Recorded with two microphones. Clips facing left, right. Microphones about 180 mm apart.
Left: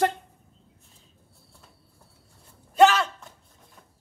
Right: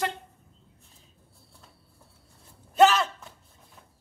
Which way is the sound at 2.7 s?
Centre (ahead or behind).